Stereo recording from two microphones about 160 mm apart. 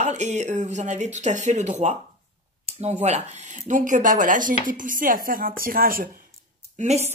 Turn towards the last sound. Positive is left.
turn(degrees=-45)  # may be behind; listen again after turning